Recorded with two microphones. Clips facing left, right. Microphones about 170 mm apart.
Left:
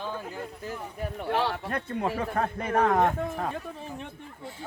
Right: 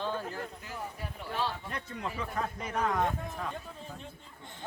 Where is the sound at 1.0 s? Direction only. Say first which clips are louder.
Left 8 dB; 65° left (ahead or behind).